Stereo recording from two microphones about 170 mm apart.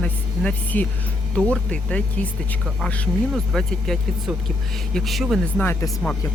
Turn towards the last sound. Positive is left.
turn(degrees=20)  # may be behind; listen again after turning